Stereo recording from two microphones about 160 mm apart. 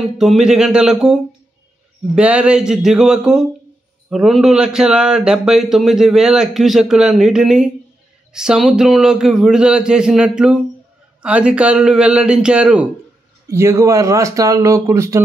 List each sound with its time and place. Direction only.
0.2 s a man's voice: centre (ahead or behind)
13.5 s speech: 15° right (ahead or behind)